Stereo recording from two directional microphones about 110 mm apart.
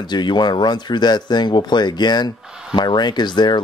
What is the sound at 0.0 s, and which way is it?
Speech, 40° left (ahead or behind).